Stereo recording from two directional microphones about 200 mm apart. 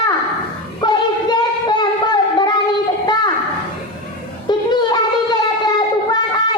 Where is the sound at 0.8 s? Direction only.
20° left (ahead or behind).